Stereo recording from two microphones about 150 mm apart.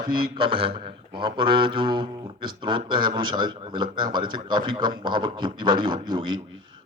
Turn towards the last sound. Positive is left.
turn(degrees=-30)  # may be behind; listen again after turning